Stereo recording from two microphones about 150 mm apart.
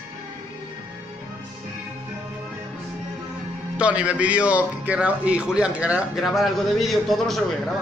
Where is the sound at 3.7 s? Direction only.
10° right (ahead or behind).